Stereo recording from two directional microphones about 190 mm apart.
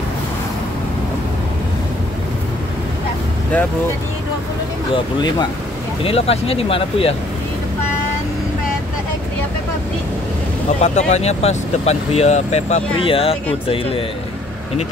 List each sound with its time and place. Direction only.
4.9 s speech: 20° left (ahead or behind)
10.8 s speech: 35° left (ahead or behind)